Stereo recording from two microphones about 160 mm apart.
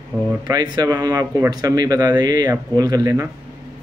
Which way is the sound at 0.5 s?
25° right (ahead or behind).